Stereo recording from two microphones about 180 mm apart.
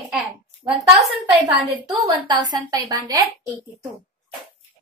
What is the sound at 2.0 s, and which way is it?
A woman's voice, 25° right (ahead or behind).